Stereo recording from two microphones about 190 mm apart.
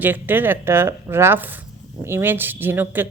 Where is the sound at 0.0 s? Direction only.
10° right (ahead or behind).